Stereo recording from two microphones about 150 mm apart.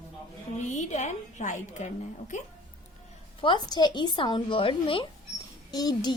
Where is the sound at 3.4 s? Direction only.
30° left (ahead or behind).